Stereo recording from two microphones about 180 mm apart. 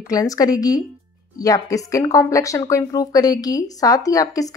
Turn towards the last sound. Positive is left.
turn(degrees=20)  # may be behind; listen again after turning